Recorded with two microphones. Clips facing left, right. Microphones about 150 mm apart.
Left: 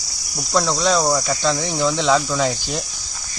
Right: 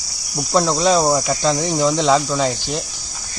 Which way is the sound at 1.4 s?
5° right (ahead or behind).